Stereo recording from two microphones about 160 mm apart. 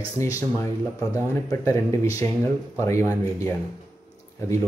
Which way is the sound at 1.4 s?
20° left (ahead or behind).